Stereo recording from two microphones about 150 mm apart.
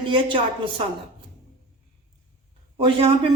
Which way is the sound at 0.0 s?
35° right (ahead or behind).